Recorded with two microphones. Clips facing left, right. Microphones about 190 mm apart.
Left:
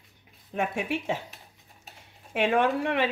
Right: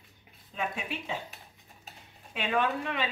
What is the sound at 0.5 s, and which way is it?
Speech, 75° left (ahead or behind).